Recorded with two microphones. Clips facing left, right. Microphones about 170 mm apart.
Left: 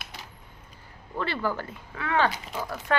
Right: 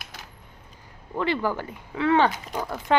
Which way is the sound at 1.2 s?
15° right (ahead or behind).